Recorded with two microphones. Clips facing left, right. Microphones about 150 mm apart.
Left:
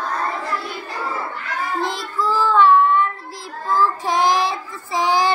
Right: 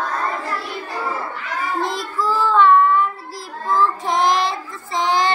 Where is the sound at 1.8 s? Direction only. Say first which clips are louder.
Even; centre (ahead or behind).